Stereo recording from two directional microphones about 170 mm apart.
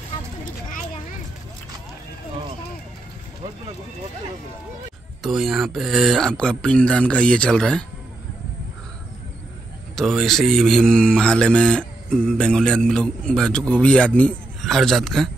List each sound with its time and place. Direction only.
5.2 s a man's voice: centre (ahead or behind)
9.9 s a man's voice: centre (ahead or behind)